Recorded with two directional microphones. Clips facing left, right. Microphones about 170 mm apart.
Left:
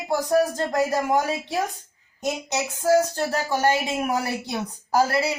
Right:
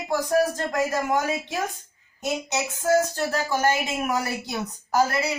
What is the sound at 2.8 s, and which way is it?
A woman's voice, 35° left (ahead or behind).